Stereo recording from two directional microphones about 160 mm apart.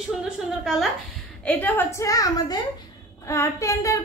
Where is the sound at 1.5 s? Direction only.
10° left (ahead or behind).